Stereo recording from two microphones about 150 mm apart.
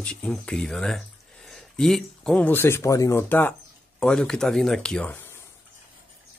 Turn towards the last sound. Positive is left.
turn(degrees=10)  # may be behind; listen again after turning